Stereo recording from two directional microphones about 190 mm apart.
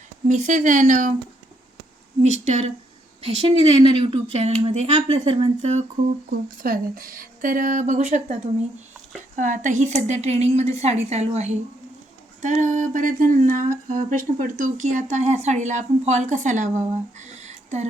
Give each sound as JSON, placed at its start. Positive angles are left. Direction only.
{"t": 0.3, "sound": "speech", "side_deg": -40}
{"t": 2.2, "sound": "speech", "side_deg": -35}
{"t": 6.6, "sound": "speech", "side_deg": -50}